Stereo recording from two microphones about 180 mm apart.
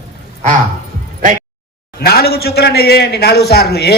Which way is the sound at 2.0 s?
60° left (ahead or behind).